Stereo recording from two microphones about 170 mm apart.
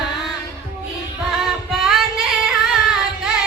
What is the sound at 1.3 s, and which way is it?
Female singing, centre (ahead or behind).